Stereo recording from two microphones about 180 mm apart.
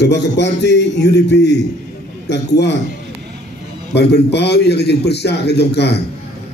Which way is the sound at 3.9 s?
65° left (ahead or behind).